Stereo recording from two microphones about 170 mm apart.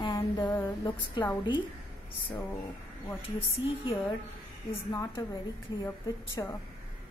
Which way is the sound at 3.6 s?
15° right (ahead or behind).